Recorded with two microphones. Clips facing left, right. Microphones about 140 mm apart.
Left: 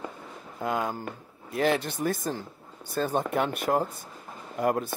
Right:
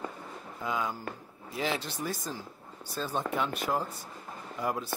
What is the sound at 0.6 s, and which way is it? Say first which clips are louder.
Speech: left 4 dB; 55° left (ahead or behind).